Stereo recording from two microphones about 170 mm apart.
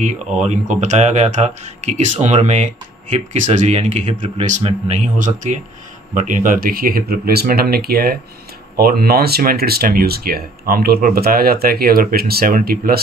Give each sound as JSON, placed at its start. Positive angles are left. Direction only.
{"t": 0.4, "sound": "speech", "side_deg": -45}